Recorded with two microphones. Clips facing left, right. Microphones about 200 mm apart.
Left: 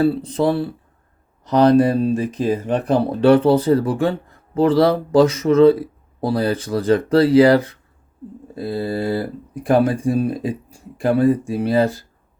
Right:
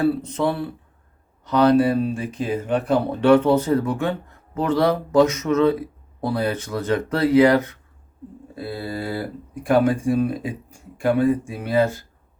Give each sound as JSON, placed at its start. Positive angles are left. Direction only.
{"t": 0.0, "sound": "speech", "side_deg": 30}